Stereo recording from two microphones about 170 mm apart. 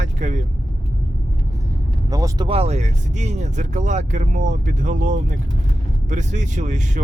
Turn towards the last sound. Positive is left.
turn(degrees=-45)  # may be behind; listen again after turning